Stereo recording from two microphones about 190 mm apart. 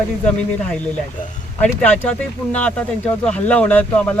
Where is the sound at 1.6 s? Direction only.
5° left (ahead or behind).